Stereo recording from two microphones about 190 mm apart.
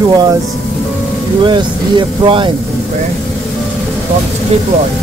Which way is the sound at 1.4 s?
25° right (ahead or behind).